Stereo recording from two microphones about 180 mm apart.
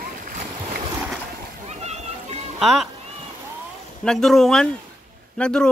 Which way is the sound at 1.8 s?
35° right (ahead or behind).